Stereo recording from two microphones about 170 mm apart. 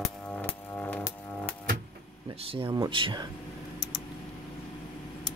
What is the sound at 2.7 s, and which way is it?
Speech, 25° right (ahead or behind).